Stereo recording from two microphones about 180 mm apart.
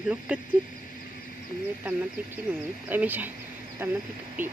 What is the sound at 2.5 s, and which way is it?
Speech, 5° right (ahead or behind).